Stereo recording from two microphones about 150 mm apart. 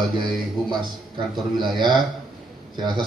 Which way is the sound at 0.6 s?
30° right (ahead or behind).